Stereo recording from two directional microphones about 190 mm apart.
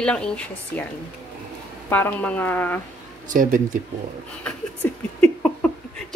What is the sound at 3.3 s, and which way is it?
Speech, 45° right (ahead or behind).